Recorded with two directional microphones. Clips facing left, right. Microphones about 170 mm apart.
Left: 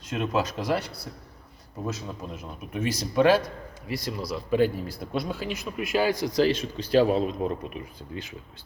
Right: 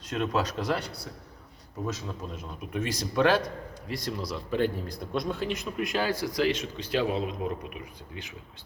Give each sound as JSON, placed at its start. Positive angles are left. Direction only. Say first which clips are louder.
{"t": 0.1, "sound": "speech", "louder": "left 1 dB", "side_deg": 10}
{"t": 2.7, "sound": "speech", "louder": "left 3 dB", "side_deg": 10}
{"t": 6.3, "sound": "a man's voice", "louder": "left 4 dB", "side_deg": 35}